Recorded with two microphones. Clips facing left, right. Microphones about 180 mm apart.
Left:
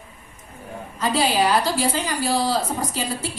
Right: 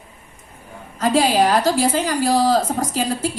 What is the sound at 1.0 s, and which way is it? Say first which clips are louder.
A woman's voice: right 4 dB; 45° right (ahead or behind).